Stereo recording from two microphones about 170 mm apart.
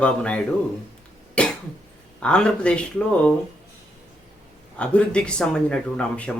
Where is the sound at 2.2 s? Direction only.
5° left (ahead or behind).